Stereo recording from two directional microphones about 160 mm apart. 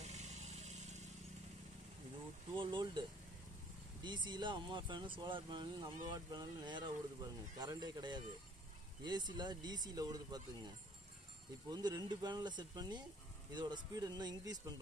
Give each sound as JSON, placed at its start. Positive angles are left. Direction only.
{"t": 0.0, "sound": "vehicle", "side_deg": -45}
{"t": 2.5, "sound": "speech", "side_deg": -30}
{"t": 11.7, "sound": "speech", "side_deg": -25}